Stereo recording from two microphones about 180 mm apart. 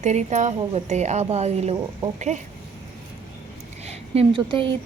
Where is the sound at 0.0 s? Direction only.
40° right (ahead or behind).